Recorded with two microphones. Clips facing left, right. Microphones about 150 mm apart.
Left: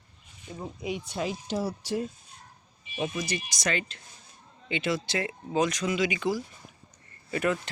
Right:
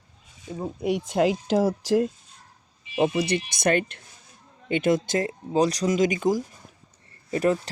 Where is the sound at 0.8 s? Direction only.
70° right (ahead or behind); by 6.4 s 45° right (ahead or behind).